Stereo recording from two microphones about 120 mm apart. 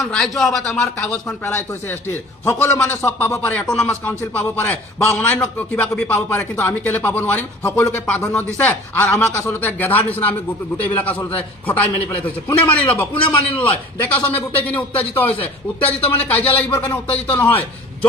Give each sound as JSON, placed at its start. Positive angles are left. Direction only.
{"t": 0.0, "sound": "speech", "side_deg": 5}
{"t": 2.4, "sound": "a man's voice", "side_deg": 20}